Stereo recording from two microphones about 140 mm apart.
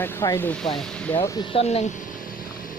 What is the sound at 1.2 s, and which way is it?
Speech, 40° left (ahead or behind).